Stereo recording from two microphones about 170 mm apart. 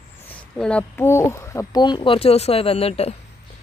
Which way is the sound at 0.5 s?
5° left (ahead or behind).